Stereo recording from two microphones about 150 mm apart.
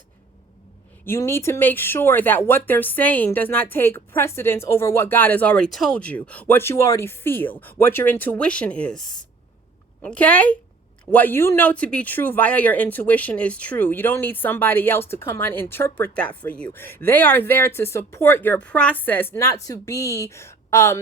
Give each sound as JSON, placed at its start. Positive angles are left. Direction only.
{"t": 1.0, "sound": "speech", "side_deg": 15}